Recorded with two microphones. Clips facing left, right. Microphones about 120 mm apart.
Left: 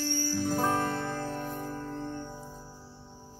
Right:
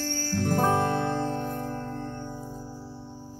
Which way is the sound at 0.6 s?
15° right (ahead or behind).